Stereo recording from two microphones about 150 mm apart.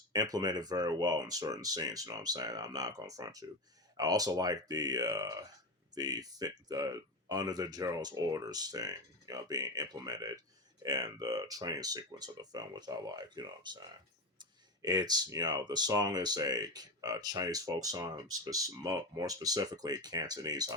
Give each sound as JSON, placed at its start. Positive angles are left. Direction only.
{"t": 0.1, "sound": "speech", "side_deg": -25}